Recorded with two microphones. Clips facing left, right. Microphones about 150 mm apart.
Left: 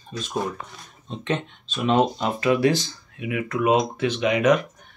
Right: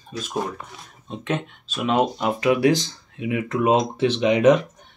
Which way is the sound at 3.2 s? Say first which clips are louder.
Right 2 dB; 25° right (ahead or behind).